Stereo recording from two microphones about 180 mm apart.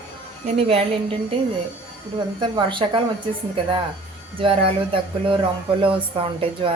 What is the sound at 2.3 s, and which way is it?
Speech, 25° right (ahead or behind).